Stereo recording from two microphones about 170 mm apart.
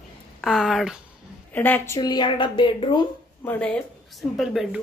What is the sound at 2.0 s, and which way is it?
A woman's voice, 25° left (ahead or behind).